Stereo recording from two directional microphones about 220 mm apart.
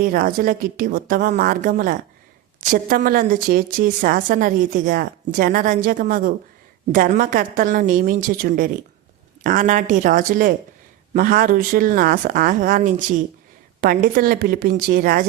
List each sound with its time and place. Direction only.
0.0 s a woman's voice: 40° right (ahead or behind)